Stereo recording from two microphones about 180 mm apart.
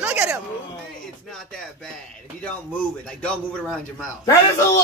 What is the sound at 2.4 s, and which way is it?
Speech, 5° left (ahead or behind).